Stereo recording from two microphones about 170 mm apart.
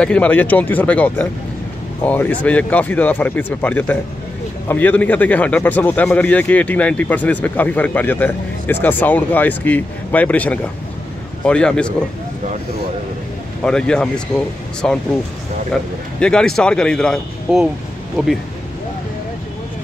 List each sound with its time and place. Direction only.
0.0 s speech: 5° left (ahead or behind)
13.6 s speech: 5° left (ahead or behind)